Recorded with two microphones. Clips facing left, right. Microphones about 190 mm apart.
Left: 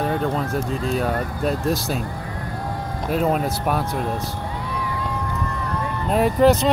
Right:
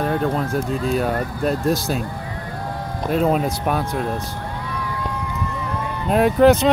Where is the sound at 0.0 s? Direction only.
Centre (ahead or behind).